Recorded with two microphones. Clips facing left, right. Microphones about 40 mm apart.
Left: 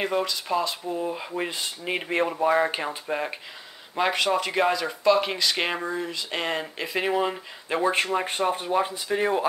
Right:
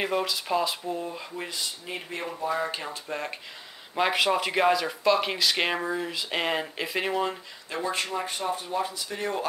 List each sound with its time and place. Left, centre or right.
0.0 s speech: centre
1.3 s speech: left
3.9 s speech: centre
7.1 s speech: centre
7.7 s speech: left